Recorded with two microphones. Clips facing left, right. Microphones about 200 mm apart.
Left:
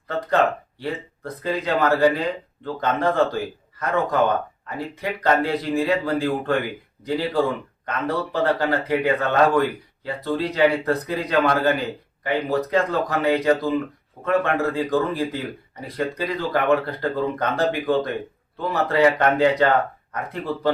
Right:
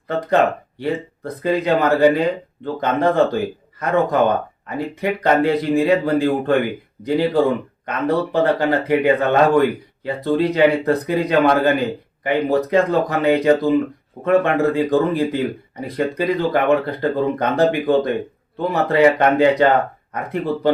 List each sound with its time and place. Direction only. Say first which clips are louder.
0.1 s speech: right 4 dB; 15° right (ahead or behind)